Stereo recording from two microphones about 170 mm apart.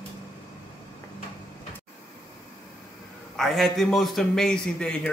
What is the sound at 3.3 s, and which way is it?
A man's voice, centre (ahead or behind).